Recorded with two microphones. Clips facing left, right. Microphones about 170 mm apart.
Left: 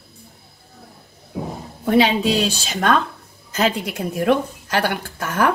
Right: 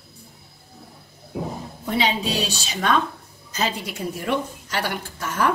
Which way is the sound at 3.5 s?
55° left (ahead or behind).